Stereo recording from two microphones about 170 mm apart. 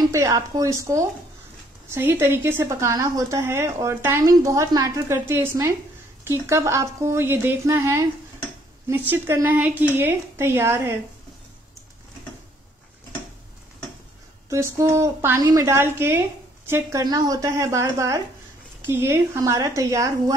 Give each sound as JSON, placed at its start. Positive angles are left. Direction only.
{"t": 0.1, "sound": "a woman's voice", "side_deg": -20}
{"t": 14.5, "sound": "a woman's voice", "side_deg": -20}